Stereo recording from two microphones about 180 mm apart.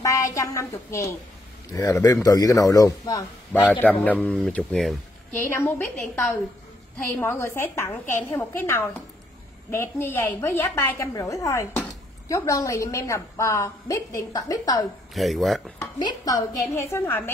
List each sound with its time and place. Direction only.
0.0 s a woman's voice: 20° left (ahead or behind)
3.8 s a woman's voice: 10° left (ahead or behind)
15.1 s speech: centre (ahead or behind)
15.8 s a man's voice: 20° left (ahead or behind)